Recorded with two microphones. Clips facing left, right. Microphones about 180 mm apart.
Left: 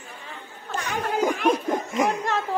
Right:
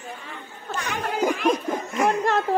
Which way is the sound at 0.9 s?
40° left (ahead or behind).